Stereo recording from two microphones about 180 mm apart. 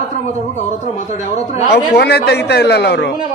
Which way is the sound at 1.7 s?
65° left (ahead or behind).